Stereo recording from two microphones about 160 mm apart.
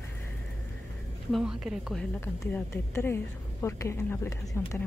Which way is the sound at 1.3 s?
5° right (ahead or behind).